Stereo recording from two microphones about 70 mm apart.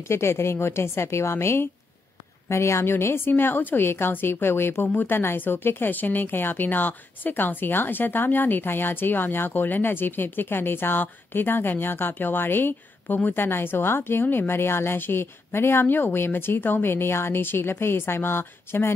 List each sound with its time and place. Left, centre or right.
0.0 s speech: left